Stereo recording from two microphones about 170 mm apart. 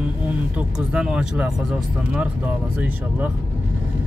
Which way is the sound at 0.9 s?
5° right (ahead or behind).